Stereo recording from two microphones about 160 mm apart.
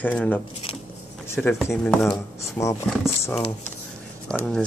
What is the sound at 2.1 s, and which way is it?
Speech, 20° left (ahead or behind).